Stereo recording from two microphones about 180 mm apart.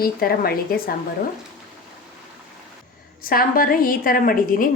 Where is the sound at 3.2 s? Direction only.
55° left (ahead or behind).